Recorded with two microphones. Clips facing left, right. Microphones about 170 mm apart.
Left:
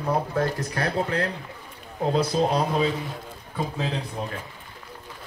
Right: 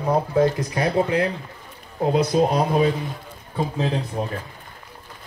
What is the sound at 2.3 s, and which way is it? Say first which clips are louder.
Speech: right 4 dB; 10° right (ahead or behind).